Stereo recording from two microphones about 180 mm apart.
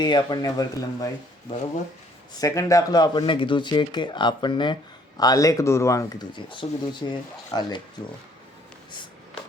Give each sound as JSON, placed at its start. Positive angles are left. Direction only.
{"t": 0.0, "sound": "speech", "side_deg": 25}
{"t": 2.4, "sound": "speech", "side_deg": 20}